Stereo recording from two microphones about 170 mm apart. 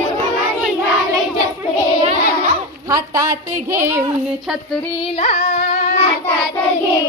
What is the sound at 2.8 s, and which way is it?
A woman's voice, 20° right (ahead or behind).